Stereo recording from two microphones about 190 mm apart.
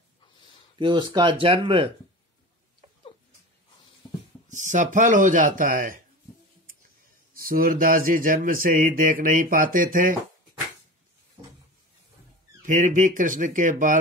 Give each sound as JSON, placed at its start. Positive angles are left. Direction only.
{"t": 0.7, "sound": "speech", "side_deg": -25}
{"t": 4.5, "sound": "speech", "side_deg": -40}
{"t": 7.3, "sound": "speech", "side_deg": -50}
{"t": 12.6, "sound": "speech", "side_deg": -45}